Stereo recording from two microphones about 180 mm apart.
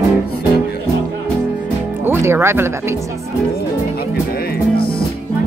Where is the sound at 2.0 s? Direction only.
15° right (ahead or behind).